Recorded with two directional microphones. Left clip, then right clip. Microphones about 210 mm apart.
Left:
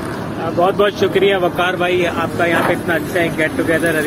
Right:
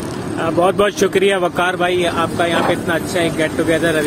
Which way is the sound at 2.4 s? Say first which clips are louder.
Left 2 dB; 20° right (ahead or behind).